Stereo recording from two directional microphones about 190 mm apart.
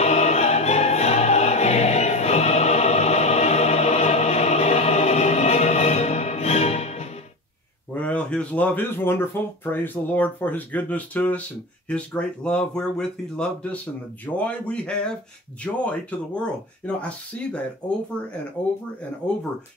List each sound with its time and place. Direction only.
0.0 s music: 35° left (ahead or behind)
7.9 s speech: 5° left (ahead or behind)